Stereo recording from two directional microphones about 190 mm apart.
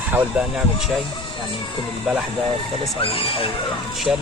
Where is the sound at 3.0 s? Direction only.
30° left (ahead or behind).